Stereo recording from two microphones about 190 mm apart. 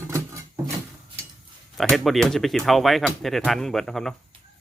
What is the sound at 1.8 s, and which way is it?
Speech, centre (ahead or behind).